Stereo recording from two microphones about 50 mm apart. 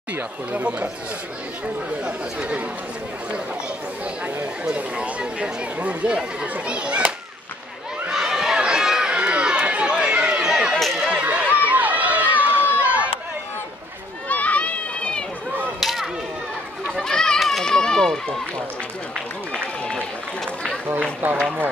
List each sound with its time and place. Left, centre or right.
0.1 s speech: right
2.0 s speech: right
4.6 s speech: right
8.1 s run: centre
10.8 s run: centre
11.2 s run: right
14.3 s run: left
15.8 s a sound: centre
17.0 s children playing: centre
17.4 s run: centre
17.6 s run: centre
19.5 s run: centre
20.9 s speech: right